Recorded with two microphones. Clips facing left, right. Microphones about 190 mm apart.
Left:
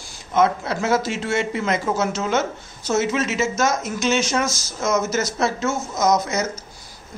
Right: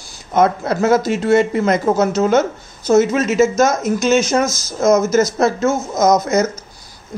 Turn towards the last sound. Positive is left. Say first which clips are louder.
# right 6 dB
turn(degrees=-45)  # may be behind; listen again after turning